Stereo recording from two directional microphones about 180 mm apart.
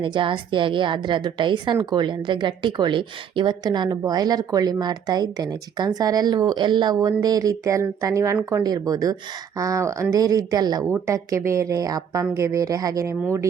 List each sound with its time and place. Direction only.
0.0 s a woman's voice: 25° right (ahead or behind)